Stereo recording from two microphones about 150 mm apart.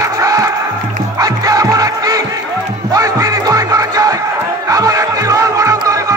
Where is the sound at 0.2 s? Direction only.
25° right (ahead or behind).